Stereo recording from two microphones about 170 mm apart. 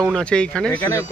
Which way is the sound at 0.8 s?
15° left (ahead or behind).